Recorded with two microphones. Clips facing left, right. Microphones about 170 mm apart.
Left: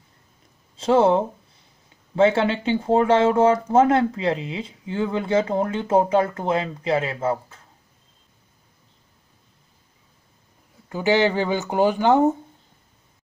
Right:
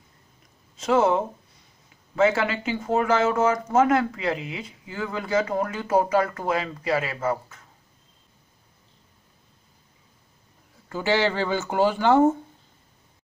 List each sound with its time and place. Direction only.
0.7 s speech: 30° left (ahead or behind)
10.9 s speech: 15° left (ahead or behind)